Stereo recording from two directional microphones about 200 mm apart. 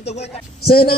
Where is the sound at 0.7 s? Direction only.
50° left (ahead or behind).